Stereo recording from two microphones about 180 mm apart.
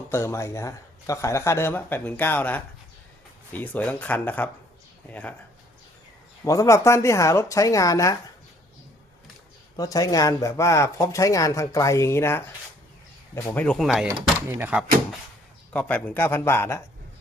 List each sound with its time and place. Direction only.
0.1 s speech: 15° left (ahead or behind)
6.4 s speech: 15° left (ahead or behind)
9.7 s speech: 20° left (ahead or behind); by 14.1 s centre (ahead or behind)
14.1 s speech: 10° right (ahead or behind)
15.7 s speech: 10° left (ahead or behind)